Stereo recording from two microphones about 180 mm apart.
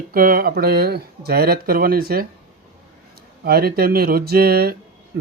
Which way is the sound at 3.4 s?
60° right (ahead or behind).